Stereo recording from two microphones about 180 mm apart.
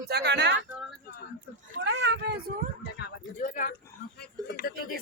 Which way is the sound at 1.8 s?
75° right (ahead or behind).